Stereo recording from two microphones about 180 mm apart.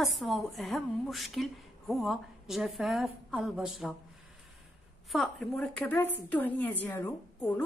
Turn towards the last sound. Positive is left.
turn(degrees=10)  # may be behind; listen again after turning